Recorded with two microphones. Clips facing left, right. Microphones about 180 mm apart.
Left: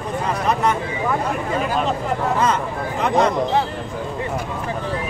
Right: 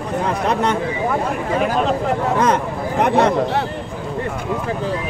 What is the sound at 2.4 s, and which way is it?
Speech, 70° right (ahead or behind).